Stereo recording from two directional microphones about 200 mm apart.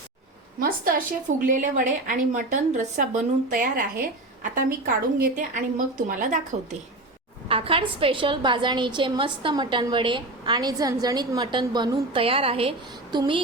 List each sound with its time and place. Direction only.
0.6 s a woman's voice: 45° right (ahead or behind)
5.2 s a woman's voice: 40° right (ahead or behind)
7.4 s a woman's voice: 25° right (ahead or behind)